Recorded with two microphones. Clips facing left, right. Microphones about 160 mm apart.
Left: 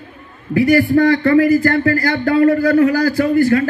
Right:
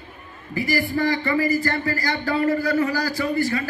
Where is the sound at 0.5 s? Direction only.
60° left (ahead or behind).